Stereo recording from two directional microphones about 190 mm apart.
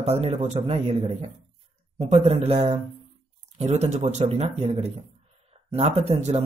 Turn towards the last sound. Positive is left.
turn(degrees=-35)  # may be behind; listen again after turning